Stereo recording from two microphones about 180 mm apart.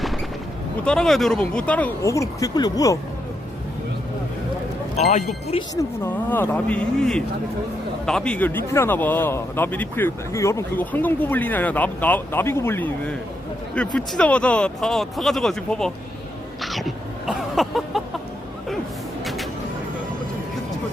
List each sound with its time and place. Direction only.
0.9 s speech: centre (ahead or behind); by 3.0 s 20° left (ahead or behind)
4.9 s speech: 40° left (ahead or behind)
6.3 s speech: 10° left (ahead or behind)
16.6 s a sound: centre (ahead or behind)
19.2 s vehicle: centre (ahead or behind)